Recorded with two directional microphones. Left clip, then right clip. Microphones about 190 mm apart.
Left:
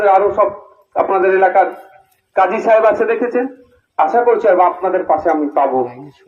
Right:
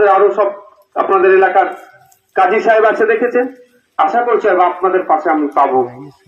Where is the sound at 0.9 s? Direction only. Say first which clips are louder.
Right 3 dB; 30° left (ahead or behind).